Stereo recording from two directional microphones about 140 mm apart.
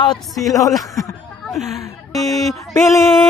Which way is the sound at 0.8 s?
20° left (ahead or behind).